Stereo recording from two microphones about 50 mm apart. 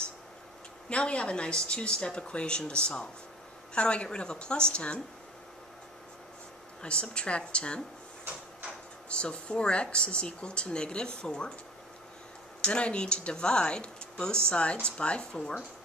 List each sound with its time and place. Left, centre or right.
0.8 s speech: left
6.8 s speech: centre
9.1 s speech: left
12.6 s speech: left